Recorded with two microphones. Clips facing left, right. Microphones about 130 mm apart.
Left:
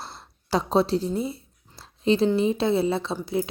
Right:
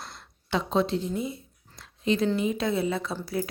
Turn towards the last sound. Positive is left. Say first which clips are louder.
# left 4 dB
turn(degrees=20)  # may be behind; listen again after turning